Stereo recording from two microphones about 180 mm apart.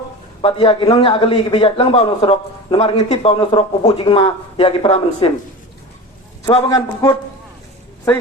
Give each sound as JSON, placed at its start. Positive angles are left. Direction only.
{"t": 0.4, "sound": "a man's voice", "side_deg": 30}
{"t": 6.4, "sound": "a man's voice", "side_deg": 30}